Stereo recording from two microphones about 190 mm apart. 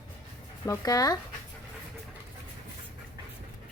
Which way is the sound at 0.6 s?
20° left (ahead or behind).